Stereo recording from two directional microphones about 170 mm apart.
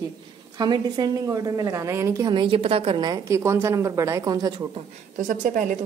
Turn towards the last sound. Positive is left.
turn(degrees=-50)  # may be behind; listen again after turning